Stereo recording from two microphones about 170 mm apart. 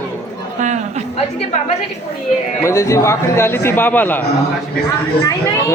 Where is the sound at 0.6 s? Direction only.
45° right (ahead or behind).